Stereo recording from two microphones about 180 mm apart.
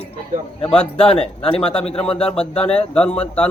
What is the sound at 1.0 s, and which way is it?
Speech, 30° left (ahead or behind).